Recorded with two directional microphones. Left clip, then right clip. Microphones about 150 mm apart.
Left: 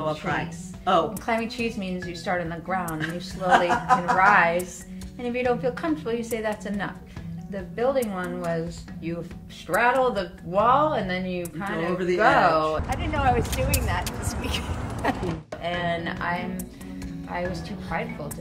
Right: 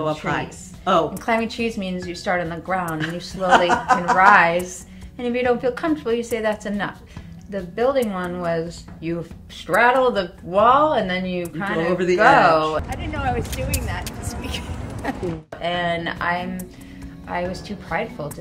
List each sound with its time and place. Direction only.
0.3 s a woman's voice: 35° right (ahead or behind)
0.9 s a woman's voice: 55° right (ahead or behind)
1.2 s speech: 30° right (ahead or behind)
3.4 s a woman's voice: 45° right (ahead or behind)
4.2 s a woman's voice: 30° right (ahead or behind)
12.8 s speech: centre (ahead or behind)
15.6 s a woman's voice: 35° right (ahead or behind)